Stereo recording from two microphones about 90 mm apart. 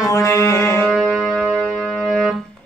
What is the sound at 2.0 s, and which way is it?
Music, 10° right (ahead or behind).